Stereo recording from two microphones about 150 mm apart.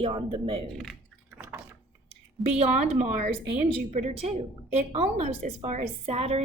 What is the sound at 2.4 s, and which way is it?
A woman's voice, 45° right (ahead or behind).